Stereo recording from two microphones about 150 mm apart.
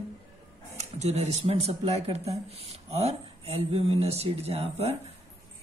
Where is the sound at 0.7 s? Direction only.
45° right (ahead or behind).